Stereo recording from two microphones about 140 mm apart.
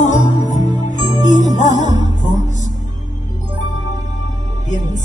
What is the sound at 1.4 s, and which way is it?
Music, 60° left (ahead or behind).